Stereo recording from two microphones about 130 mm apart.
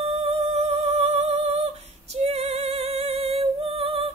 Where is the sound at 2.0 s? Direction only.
55° right (ahead or behind).